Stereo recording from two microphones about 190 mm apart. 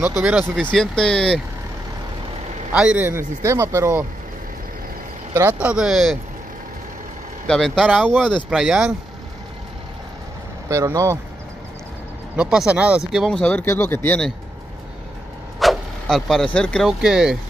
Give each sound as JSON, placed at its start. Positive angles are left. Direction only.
{"t": 0.2, "sound": "speech", "side_deg": -5}
{"t": 0.6, "sound": "speech", "side_deg": 5}
{"t": 2.7, "sound": "speech", "side_deg": -5}
{"t": 5.3, "sound": "speech", "side_deg": -10}
{"t": 7.4, "sound": "speech", "side_deg": 5}
{"t": 10.7, "sound": "speech", "side_deg": -15}
{"t": 12.4, "sound": "speech", "side_deg": -5}
{"t": 15.6, "sound": "vehicle", "side_deg": 0}
{"t": 16.5, "sound": "speech", "side_deg": 5}